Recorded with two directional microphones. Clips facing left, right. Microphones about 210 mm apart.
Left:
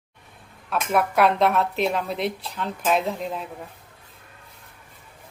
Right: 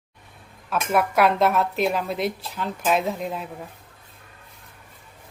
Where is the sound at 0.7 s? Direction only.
Centre (ahead or behind).